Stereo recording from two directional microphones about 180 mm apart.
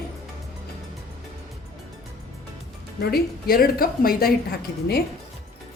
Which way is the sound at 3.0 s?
55° left (ahead or behind).